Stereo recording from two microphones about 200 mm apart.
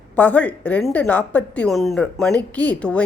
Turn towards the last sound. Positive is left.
turn(degrees=5)  # may be behind; listen again after turning